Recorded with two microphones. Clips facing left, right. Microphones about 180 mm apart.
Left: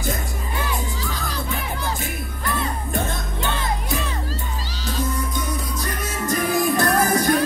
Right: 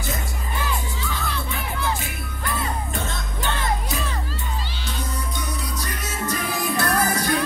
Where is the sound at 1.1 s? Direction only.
40° left (ahead or behind).